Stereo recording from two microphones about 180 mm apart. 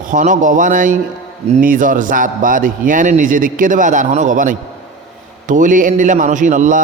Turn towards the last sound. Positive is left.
turn(degrees=-45)  # may be behind; listen again after turning